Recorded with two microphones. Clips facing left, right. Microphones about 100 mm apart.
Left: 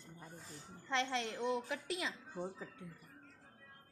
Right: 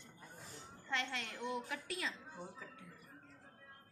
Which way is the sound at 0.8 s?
25° left (ahead or behind).